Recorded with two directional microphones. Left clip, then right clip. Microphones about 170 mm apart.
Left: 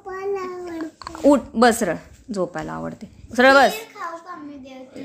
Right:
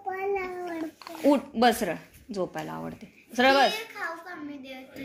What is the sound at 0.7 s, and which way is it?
A child's voice, 30° left (ahead or behind).